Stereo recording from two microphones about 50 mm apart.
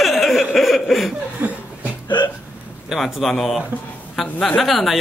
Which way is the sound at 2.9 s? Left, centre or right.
Centre.